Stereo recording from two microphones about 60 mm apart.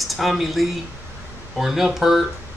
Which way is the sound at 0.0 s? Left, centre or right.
Centre.